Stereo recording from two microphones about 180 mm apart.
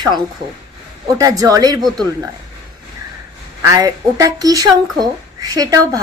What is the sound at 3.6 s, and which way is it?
A woman's voice, 20° right (ahead or behind).